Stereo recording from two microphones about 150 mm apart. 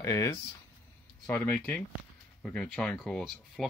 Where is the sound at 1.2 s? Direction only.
10° left (ahead or behind).